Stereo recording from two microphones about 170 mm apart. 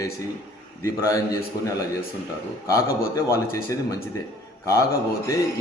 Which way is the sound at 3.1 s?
15° left (ahead or behind).